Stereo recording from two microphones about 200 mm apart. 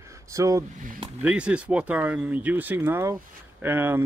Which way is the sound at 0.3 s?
15° right (ahead or behind).